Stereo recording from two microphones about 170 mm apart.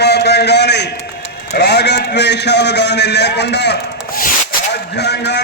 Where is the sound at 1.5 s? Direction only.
75° left (ahead or behind).